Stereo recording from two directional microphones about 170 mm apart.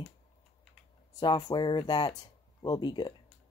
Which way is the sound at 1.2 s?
25° left (ahead or behind).